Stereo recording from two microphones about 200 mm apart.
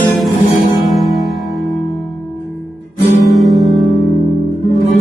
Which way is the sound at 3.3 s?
Centre (ahead or behind).